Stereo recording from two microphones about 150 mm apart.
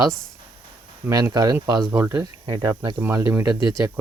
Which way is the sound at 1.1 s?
25° right (ahead or behind).